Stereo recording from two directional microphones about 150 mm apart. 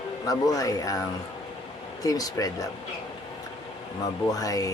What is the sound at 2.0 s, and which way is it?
Speech, 25° left (ahead or behind).